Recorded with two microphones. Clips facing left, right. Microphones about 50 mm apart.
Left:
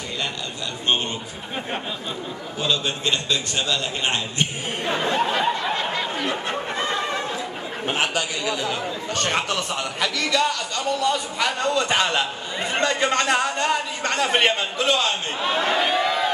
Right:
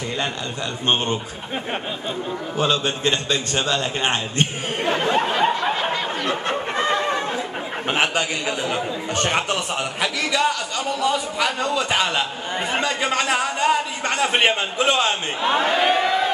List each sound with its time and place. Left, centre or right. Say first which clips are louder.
2.6 s a man's voice: right 3 dB; right
5.5 s snicker: right 2 dB; centre
6.8 s a sound: right 5 dB; right
7.9 s a man's voice: right 3 dB; right
9.1 s a man's voice: right 2 dB; centre